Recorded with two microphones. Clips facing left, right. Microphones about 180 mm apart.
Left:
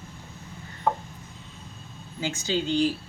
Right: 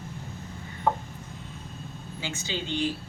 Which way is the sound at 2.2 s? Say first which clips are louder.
Left 6 dB; 40° left (ahead or behind).